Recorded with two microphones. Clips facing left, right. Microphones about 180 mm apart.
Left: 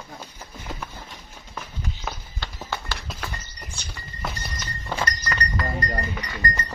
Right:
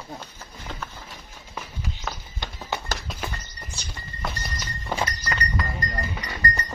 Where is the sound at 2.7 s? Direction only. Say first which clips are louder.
Right 2 dB; 20° right (ahead or behind).